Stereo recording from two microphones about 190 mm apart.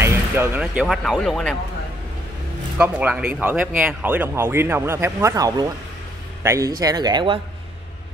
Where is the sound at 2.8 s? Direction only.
5° right (ahead or behind); by 7.4 s 25° right (ahead or behind).